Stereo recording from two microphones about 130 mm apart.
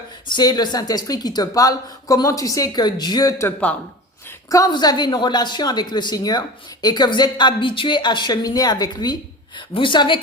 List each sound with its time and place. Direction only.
0.3 s a woman's voice: 30° left (ahead or behind)